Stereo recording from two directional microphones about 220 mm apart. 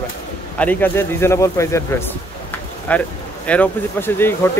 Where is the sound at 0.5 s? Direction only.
10° left (ahead or behind).